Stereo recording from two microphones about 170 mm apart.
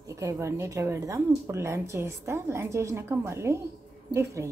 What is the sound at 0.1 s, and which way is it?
Speech, 20° right (ahead or behind).